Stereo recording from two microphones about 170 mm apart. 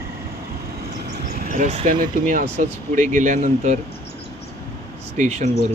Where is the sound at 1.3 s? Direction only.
55° right (ahead or behind).